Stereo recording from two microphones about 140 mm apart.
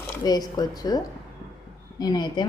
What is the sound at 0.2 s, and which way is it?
A woman's voice, 30° left (ahead or behind).